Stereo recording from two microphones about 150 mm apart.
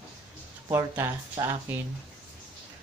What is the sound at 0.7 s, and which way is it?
Speech, 15° right (ahead or behind).